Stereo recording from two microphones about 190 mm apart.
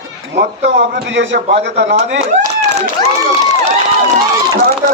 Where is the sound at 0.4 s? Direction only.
70° right (ahead or behind).